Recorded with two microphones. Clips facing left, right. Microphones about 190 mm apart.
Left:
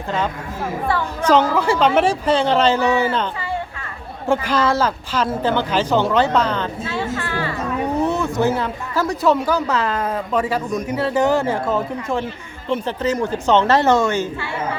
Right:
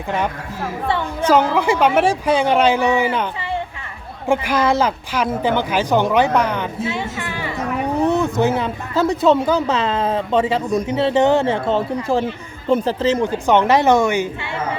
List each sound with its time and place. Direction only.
0.9 s speech: 25° right (ahead or behind)
1.3 s speech: 10° right (ahead or behind)
4.3 s speech: 15° right (ahead or behind)
13.5 s speech: 15° right (ahead or behind)